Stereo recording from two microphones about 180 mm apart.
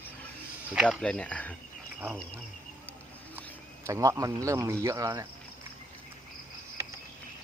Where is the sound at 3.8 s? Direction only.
15° right (ahead or behind).